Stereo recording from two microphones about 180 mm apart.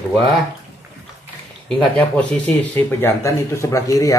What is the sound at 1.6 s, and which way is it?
Speech, 5° left (ahead or behind).